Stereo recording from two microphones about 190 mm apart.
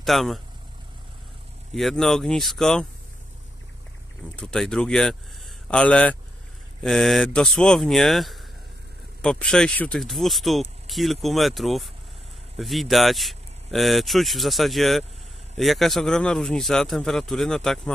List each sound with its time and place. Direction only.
0.0 s speech: centre (ahead or behind)
1.8 s speech: centre (ahead or behind)
4.4 s a man's voice: 5° left (ahead or behind)